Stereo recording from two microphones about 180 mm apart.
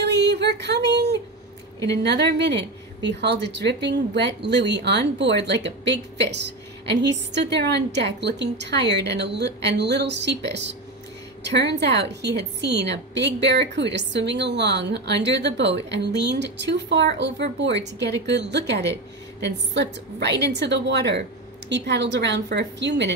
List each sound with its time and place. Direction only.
0.0 s speech: 70° right (ahead or behind)